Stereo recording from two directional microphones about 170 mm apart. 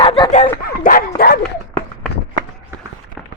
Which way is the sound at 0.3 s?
45° left (ahead or behind).